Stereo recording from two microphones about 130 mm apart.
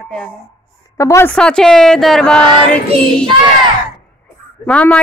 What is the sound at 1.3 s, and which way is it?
A woman's voice, 5° left (ahead or behind).